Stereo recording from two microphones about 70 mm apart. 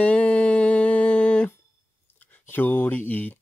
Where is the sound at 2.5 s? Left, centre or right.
Left.